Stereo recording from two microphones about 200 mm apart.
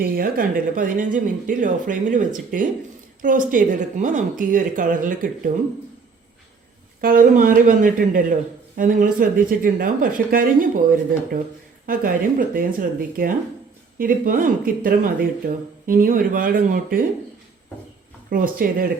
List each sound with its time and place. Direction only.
0.0 s speech: 45° right (ahead or behind)
7.0 s speech: 45° right (ahead or behind)
18.3 s speech: 45° right (ahead or behind)